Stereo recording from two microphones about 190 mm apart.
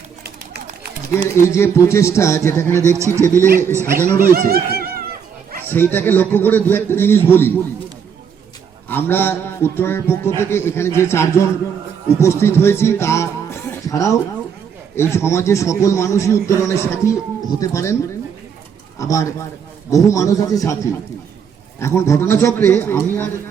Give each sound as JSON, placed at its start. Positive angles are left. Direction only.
{"t": 1.1, "sound": "a man's voice", "side_deg": 15}
{"t": 3.0, "sound": "speech", "side_deg": -15}
{"t": 4.3, "sound": "speech", "side_deg": -50}
{"t": 5.6, "sound": "a man's voice", "side_deg": 10}
{"t": 8.9, "sound": "a man's voice", "side_deg": 10}
{"t": 18.9, "sound": "a man's voice", "side_deg": 15}
{"t": 21.8, "sound": "a man's voice", "side_deg": 15}